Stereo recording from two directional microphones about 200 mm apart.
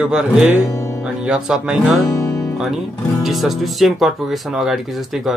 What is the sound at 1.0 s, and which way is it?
Speech, 5° right (ahead or behind).